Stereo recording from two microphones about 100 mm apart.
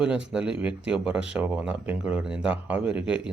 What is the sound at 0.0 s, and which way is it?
Speech, 10° right (ahead or behind).